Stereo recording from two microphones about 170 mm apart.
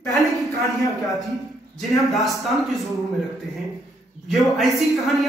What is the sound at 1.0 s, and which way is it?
Speech, centre (ahead or behind).